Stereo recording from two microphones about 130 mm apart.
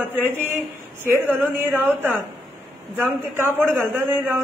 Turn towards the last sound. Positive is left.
turn(degrees=-15)  # may be behind; listen again after turning